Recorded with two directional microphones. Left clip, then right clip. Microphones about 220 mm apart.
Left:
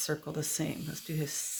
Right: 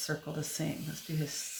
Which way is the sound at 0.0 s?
50° left (ahead or behind).